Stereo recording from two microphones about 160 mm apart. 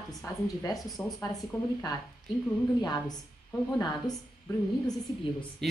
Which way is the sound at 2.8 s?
25° left (ahead or behind).